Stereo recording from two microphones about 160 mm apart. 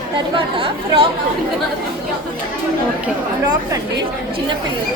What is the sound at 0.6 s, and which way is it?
Speech, 35° right (ahead or behind).